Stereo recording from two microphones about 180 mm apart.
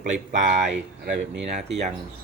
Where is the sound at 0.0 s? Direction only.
45° right (ahead or behind).